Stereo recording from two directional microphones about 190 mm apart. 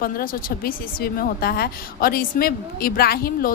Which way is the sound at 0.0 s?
50° left (ahead or behind).